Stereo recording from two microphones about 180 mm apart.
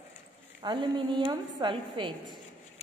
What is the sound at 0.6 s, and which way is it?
A woman's voice, 25° right (ahead or behind).